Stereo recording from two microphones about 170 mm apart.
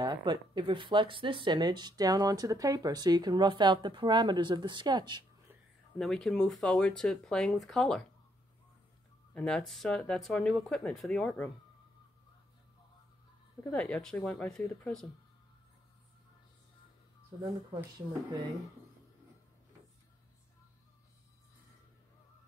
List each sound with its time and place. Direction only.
0.0 s speech: 25° right (ahead or behind)
5.9 s speech: 5° left (ahead or behind)
9.3 s speech: 5° left (ahead or behind)
13.7 s speech: 5° left (ahead or behind)
17.3 s speech: 20° right (ahead or behind)